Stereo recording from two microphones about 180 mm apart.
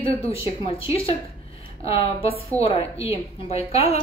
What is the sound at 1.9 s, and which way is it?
A woman's voice, 30° left (ahead or behind).